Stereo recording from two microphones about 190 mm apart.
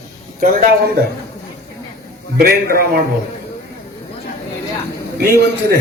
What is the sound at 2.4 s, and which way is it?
Speech, 50° right (ahead or behind).